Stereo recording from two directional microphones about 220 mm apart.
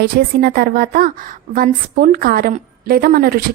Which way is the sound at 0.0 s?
45° right (ahead or behind).